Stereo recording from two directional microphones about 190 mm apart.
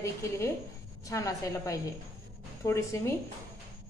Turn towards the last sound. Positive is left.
turn(degrees=15)  # may be behind; listen again after turning